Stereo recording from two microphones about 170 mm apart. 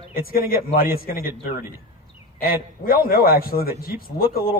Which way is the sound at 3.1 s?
60° left (ahead or behind).